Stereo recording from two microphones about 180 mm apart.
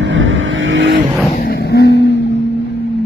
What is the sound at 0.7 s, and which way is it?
Vehicle, 90° right.